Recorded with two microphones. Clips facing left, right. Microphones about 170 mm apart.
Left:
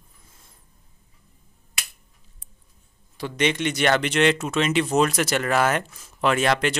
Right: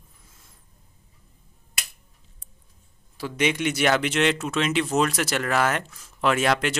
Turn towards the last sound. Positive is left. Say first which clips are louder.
# left 1 dB
turn(degrees=-5)  # may be behind; listen again after turning